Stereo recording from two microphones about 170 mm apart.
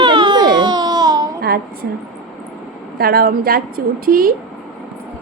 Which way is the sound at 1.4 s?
60° right (ahead or behind).